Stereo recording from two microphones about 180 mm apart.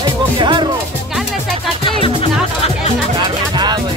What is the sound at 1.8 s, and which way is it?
Music, 30° left (ahead or behind).